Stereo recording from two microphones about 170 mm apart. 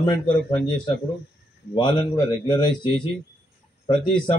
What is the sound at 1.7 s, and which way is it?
Speech, 25° left (ahead or behind).